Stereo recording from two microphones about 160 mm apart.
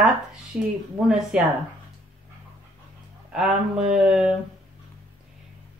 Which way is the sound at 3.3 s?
5° right (ahead or behind).